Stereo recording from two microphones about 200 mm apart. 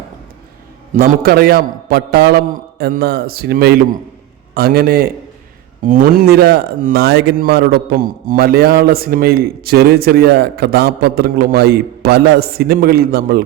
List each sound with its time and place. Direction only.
0.9 s a man's voice: 50° right (ahead or behind)